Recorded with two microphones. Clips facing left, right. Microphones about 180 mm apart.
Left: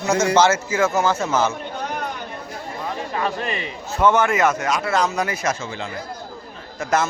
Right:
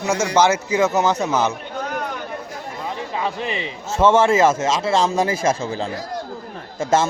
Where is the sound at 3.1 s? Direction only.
15° right (ahead or behind).